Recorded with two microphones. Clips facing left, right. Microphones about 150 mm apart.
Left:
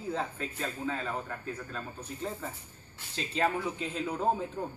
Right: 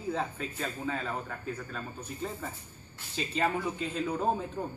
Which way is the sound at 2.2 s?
5° right (ahead or behind).